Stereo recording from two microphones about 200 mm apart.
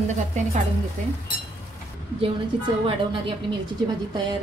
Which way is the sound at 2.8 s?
25° right (ahead or behind).